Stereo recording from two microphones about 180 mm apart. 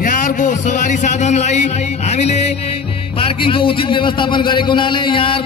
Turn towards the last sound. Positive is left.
turn(degrees=30)  # may be behind; listen again after turning